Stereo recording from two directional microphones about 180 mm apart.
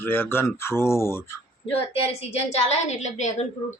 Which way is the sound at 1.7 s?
35° left (ahead or behind).